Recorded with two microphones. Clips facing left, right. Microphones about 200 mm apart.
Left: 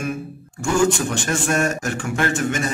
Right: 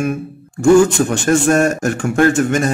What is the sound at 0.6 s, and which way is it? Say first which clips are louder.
A man's voice: right 9 dB; 45° right (ahead or behind).